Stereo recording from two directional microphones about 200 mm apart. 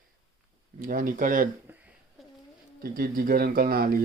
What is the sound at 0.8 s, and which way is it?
Speech, 45° right (ahead or behind).